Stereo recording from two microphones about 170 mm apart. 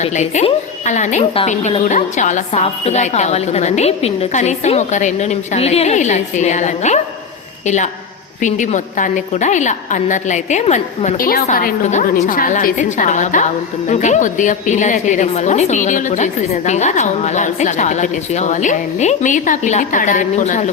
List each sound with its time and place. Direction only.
0.0 s a woman's voice: 45° left (ahead or behind)
8.4 s a woman's voice: 45° left (ahead or behind)